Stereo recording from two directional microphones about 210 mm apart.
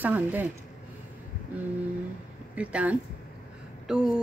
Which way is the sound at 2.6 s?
5° right (ahead or behind).